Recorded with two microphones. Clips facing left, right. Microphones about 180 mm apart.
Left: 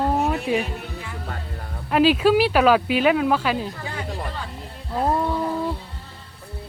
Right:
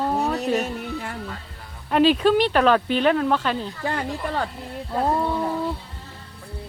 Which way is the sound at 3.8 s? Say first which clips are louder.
Right 4 dB; 60° right (ahead or behind).